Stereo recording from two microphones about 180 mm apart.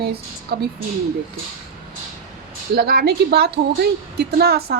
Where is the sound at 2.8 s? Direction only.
60° right (ahead or behind).